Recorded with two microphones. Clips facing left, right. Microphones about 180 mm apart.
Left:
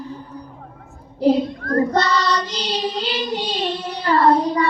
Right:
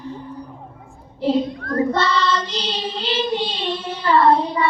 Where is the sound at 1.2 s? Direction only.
40° left (ahead or behind).